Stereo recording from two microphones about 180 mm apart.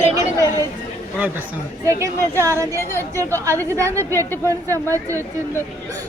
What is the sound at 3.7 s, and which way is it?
Speech, 15° right (ahead or behind).